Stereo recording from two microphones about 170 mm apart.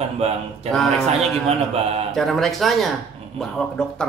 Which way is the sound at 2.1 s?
Centre (ahead or behind).